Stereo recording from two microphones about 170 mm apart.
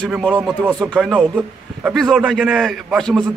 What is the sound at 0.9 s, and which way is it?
A man's voice, 5° right (ahead or behind).